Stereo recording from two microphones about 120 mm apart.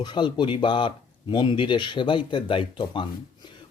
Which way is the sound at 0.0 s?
40° left (ahead or behind).